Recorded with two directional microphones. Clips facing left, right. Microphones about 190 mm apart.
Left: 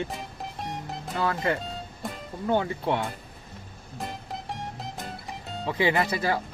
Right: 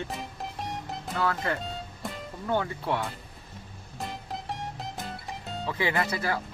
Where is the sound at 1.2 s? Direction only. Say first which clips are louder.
Left 2 dB; 20° left (ahead or behind).